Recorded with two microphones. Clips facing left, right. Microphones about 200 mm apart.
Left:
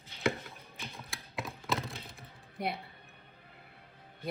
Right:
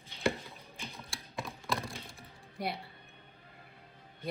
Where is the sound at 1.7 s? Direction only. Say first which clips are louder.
Left 1 dB; centre (ahead or behind).